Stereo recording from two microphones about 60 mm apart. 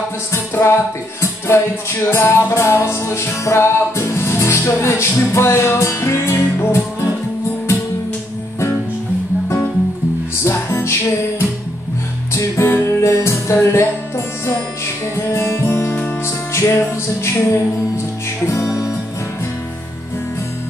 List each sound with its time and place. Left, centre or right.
0.3 s music: left
10.4 s music: left
18.5 s music: left